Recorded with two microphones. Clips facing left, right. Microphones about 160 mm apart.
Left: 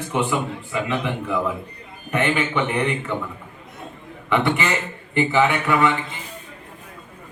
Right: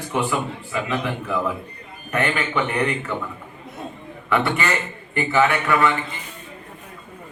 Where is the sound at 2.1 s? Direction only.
20° left (ahead or behind).